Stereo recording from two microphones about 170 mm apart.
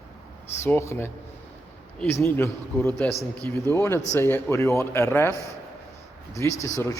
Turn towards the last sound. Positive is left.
turn(degrees=20)  # may be behind; listen again after turning